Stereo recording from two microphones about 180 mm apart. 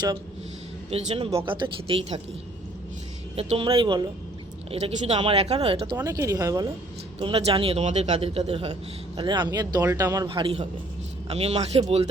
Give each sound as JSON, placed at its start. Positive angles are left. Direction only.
{"t": 0.9, "sound": "a man's voice", "side_deg": -35}
{"t": 3.3, "sound": "speech", "side_deg": -30}
{"t": 4.7, "sound": "a man's voice", "side_deg": -35}
{"t": 6.0, "sound": "speech", "side_deg": -20}
{"t": 7.2, "sound": "a man's voice", "side_deg": -30}
{"t": 10.2, "sound": "a man's voice", "side_deg": -30}